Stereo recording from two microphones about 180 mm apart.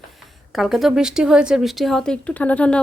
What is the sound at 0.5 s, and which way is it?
Speech, centre (ahead or behind).